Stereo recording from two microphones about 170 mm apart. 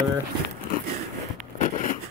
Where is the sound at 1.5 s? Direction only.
50° left (ahead or behind).